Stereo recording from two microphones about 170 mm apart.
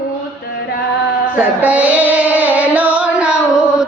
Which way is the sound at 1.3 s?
10° right (ahead or behind).